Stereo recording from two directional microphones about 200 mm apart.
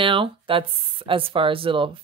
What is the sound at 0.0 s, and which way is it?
Speech, 25° right (ahead or behind).